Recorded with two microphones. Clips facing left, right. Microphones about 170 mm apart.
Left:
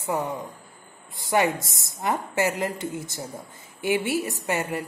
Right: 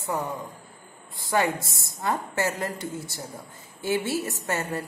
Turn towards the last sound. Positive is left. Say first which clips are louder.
# left 2 dB
turn(degrees=15)  # may be behind; listen again after turning